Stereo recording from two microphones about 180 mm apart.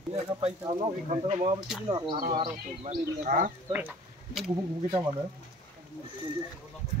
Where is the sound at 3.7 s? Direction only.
5° right (ahead or behind).